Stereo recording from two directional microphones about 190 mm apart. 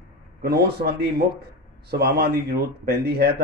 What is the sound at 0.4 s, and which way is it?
Speech, 55° right (ahead or behind).